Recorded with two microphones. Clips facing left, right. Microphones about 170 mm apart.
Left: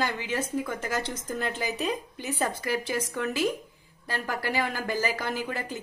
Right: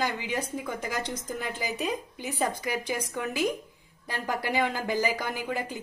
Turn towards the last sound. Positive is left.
turn(degrees=-15)  # may be behind; listen again after turning